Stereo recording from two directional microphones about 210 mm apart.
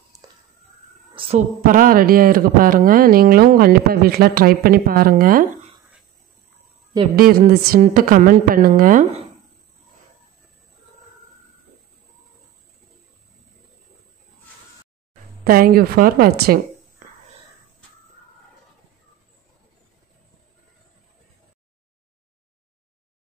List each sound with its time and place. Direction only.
0.1 s a sound: 15° right (ahead or behind)
1.6 s speech: 40° right (ahead or behind)
7.2 s a woman's voice: 45° right (ahead or behind)
15.4 s speech: 45° right (ahead or behind)
17.0 s whispering: 40° right (ahead or behind)